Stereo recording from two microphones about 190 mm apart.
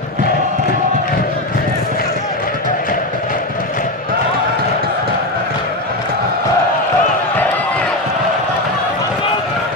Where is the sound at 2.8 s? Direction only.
45° left (ahead or behind).